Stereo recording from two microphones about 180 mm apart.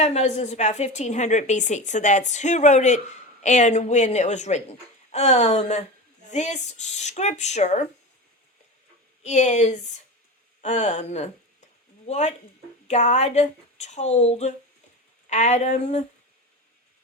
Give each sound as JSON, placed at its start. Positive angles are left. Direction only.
{"t": 0.0, "sound": "a woman's voice", "side_deg": 40}
{"t": 9.2, "sound": "a woman's voice", "side_deg": 40}